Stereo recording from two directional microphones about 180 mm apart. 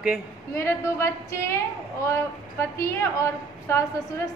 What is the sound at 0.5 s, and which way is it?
A woman's voice, 15° left (ahead or behind).